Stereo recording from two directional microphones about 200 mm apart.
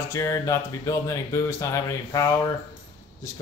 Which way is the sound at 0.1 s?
15° left (ahead or behind).